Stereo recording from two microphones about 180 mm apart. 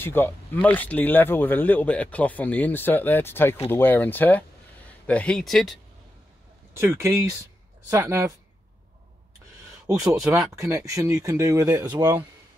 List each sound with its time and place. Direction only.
0.0 s speech: 10° left (ahead or behind)
6.7 s speech: 15° right (ahead or behind)
9.9 s speech: 20° right (ahead or behind)
10.2 s speech: 5° right (ahead or behind)
10.6 s speech: 15° right (ahead or behind)